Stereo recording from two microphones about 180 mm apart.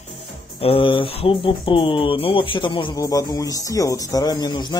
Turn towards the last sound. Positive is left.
turn(degrees=20)  # may be behind; listen again after turning